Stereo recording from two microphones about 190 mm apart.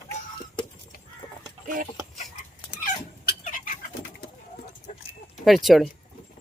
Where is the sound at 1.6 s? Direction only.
45° right (ahead or behind).